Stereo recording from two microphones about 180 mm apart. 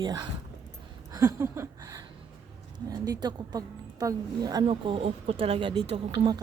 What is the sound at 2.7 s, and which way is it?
A woman's voice, 20° right (ahead or behind).